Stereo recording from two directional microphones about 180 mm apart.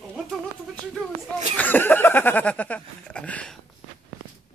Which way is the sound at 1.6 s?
10° left (ahead or behind).